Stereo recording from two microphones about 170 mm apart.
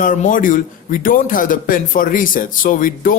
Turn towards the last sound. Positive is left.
turn(degrees=55)  # may be behind; listen again after turning